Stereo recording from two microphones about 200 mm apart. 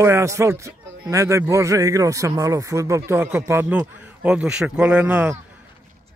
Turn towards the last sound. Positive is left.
turn(degrees=-5)  # may be behind; listen again after turning